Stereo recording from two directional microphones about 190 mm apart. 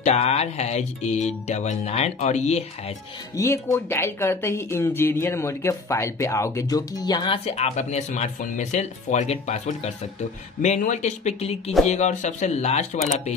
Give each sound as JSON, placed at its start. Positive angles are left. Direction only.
{"t": 0.0, "sound": "music", "side_deg": 35}
{"t": 3.3, "sound": "speech", "side_deg": 15}
{"t": 7.4, "sound": "music", "side_deg": 35}